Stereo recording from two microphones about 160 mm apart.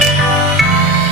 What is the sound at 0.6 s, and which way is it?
Music, centre (ahead or behind).